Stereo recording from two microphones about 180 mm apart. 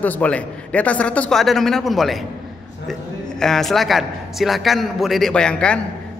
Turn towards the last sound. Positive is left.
turn(degrees=5)  # may be behind; listen again after turning